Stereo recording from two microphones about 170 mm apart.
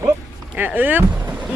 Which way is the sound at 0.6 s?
10° right (ahead or behind).